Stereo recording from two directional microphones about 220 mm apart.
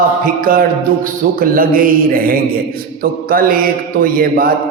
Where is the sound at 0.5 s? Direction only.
40° right (ahead or behind).